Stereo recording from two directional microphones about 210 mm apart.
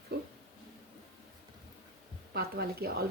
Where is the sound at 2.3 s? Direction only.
50° right (ahead or behind).